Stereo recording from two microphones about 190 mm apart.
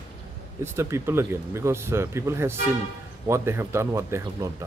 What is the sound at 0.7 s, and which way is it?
Speech, 15° right (ahead or behind).